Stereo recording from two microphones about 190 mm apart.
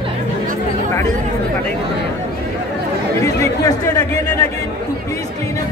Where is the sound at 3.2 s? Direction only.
15° left (ahead or behind).